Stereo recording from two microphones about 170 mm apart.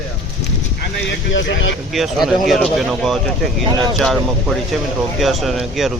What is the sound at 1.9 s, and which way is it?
Speech, centre (ahead or behind).